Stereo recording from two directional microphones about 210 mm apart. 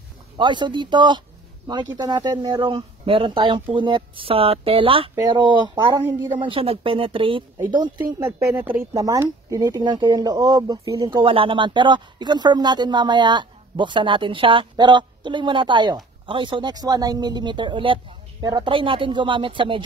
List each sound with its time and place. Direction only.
0.4 s speech: 20° right (ahead or behind)
8.1 s speech: 10° right (ahead or behind)